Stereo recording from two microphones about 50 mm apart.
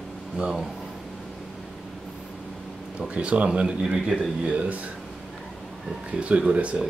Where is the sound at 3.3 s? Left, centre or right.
Right.